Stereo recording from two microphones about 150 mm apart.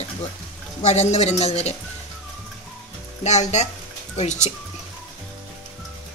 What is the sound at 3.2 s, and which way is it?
Speech, 50° left (ahead or behind).